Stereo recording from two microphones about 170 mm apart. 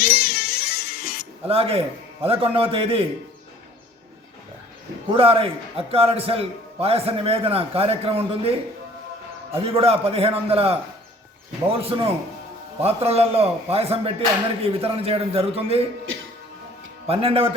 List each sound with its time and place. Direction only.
0.0 s music: 60° left (ahead or behind)
1.5 s a man's voice: 35° right (ahead or behind)
5.1 s a man's voice: 35° right (ahead or behind)
17.1 s a man's voice: 35° right (ahead or behind)